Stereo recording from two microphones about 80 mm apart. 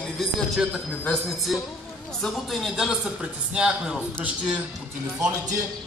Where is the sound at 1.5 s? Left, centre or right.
Centre.